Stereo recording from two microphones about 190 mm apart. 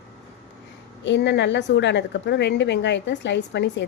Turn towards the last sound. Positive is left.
turn(degrees=65)  # may be behind; listen again after turning